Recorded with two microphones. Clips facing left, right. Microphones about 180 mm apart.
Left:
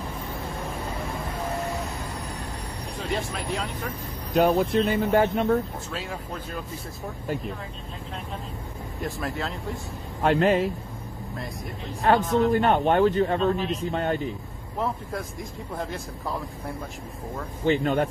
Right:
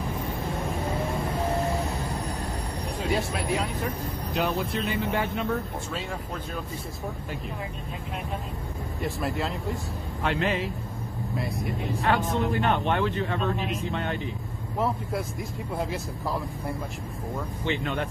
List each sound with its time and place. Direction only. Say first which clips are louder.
3.1 s speech: right 2 dB; centre (ahead or behind)
4.3 s speech: left 8 dB; 45° left (ahead or behind)
9.0 s speech: right 1 dB; centre (ahead or behind)
10.2 s speech: left 7 dB; 45° left (ahead or behind)
11.3 s speech: right 6 dB; centre (ahead or behind)
12.0 s a man's voice: left 6 dB; 40° left (ahead or behind)
15.8 s speech: right 1 dB; centre (ahead or behind)
17.6 s a man's voice: left 7 dB; 40° left (ahead or behind)